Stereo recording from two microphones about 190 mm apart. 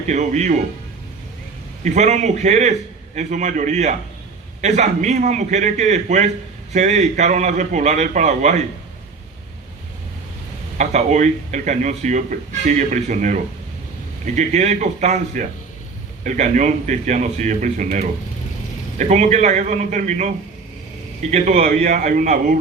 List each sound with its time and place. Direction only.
0.1 s speech: 35° right (ahead or behind)
1.8 s speech: 40° right (ahead or behind)
10.8 s speech: 40° right (ahead or behind)